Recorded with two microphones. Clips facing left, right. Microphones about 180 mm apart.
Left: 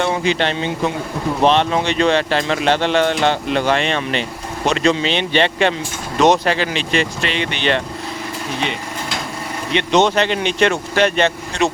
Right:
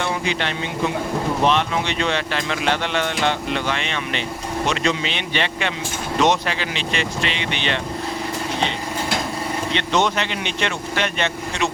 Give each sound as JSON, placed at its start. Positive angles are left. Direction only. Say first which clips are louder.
{"t": 0.3, "sound": "speech", "louder": "left 6 dB", "side_deg": 30}
{"t": 9.7, "sound": "speech", "louder": "left 6 dB", "side_deg": 20}
{"t": 10.2, "sound": "speech", "louder": "left 8 dB", "side_deg": 40}